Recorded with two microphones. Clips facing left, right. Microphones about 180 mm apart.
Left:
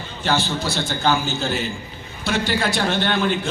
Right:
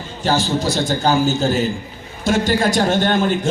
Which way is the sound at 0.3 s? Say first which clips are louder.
Right 4 dB; 40° right (ahead or behind).